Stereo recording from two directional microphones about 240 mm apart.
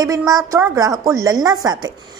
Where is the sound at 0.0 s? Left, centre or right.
Centre.